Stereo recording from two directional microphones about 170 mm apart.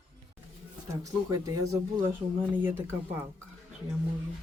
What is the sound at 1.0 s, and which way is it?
Speech, 20° right (ahead or behind).